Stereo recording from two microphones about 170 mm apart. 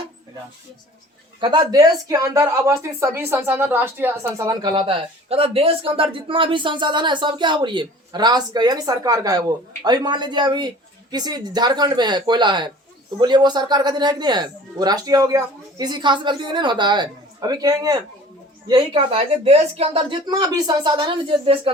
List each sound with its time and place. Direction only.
1.4 s speech: 25° right (ahead or behind)
18.7 s speech: 35° right (ahead or behind)